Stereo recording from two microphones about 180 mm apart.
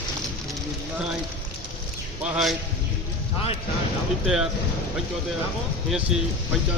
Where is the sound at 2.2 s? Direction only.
5° right (ahead or behind).